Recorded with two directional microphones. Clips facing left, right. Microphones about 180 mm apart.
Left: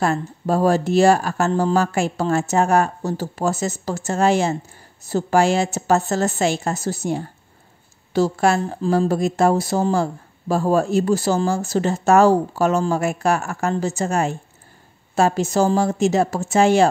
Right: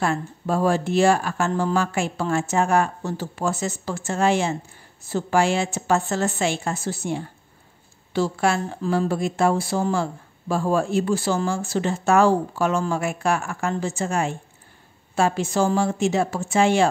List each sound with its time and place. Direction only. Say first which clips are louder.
0.0 s speech: left 3 dB; 40° left (ahead or behind)